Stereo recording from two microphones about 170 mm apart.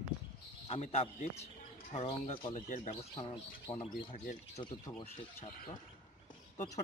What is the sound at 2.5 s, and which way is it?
Speech, 45° left (ahead or behind).